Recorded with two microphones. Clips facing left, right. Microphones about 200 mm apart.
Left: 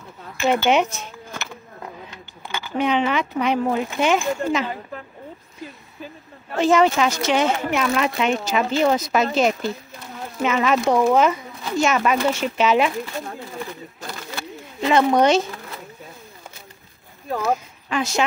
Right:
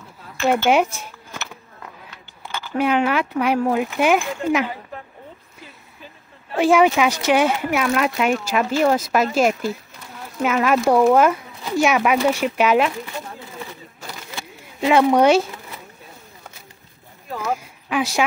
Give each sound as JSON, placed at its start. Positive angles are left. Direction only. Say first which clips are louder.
{"t": 0.7, "sound": "a sound", "louder": "right 1 dB", "side_deg": -5}
{"t": 2.4, "sound": "speech", "louder": "right 1 dB", "side_deg": 0}
{"t": 6.5, "sound": "speech", "louder": "right 2 dB", "side_deg": -10}
{"t": 14.0, "sound": "bird", "louder": "left 2 dB", "side_deg": -10}
{"t": 17.8, "sound": "a woman's voice", "louder": "right 1 dB", "side_deg": -10}